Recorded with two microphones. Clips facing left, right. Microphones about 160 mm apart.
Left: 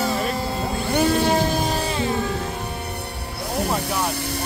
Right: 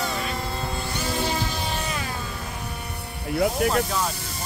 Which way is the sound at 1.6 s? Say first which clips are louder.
Left 6 dB; 35° left (ahead or behind).